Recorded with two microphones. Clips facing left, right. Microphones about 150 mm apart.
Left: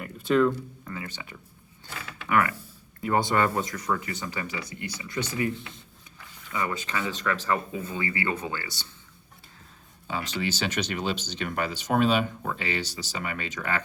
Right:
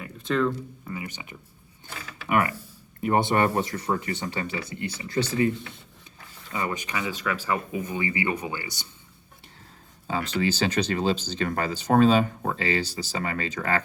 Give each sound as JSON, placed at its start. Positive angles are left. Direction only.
{"t": 0.0, "sound": "a sound", "side_deg": 5}
{"t": 0.9, "sound": "music", "side_deg": -15}
{"t": 2.3, "sound": "speech", "side_deg": -25}
{"t": 6.5, "sound": "speech", "side_deg": -25}
{"t": 10.1, "sound": "speech", "side_deg": -35}